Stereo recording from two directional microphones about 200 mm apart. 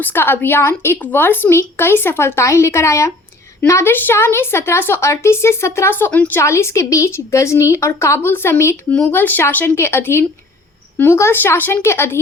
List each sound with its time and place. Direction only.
0.0 s a woman's voice: 10° left (ahead or behind)